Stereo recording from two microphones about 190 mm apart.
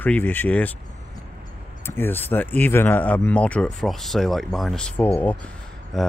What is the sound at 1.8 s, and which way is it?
Speech, 10° left (ahead or behind).